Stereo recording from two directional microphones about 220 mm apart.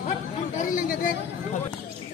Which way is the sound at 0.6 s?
35° left (ahead or behind).